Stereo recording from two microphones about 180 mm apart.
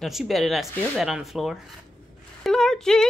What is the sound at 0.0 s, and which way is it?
Speech, centre (ahead or behind).